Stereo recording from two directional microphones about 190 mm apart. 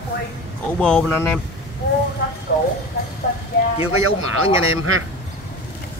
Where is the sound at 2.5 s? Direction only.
50° left (ahead or behind).